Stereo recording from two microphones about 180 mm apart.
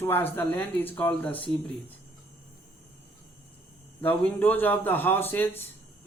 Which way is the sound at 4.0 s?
10° left (ahead or behind).